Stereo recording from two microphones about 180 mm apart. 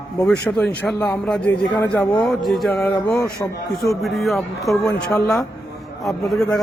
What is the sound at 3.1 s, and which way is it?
Speech, 15° left (ahead or behind).